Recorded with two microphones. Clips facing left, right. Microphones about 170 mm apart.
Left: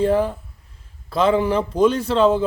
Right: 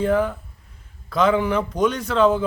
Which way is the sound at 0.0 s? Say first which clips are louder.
Left 2 dB; 30° left (ahead or behind).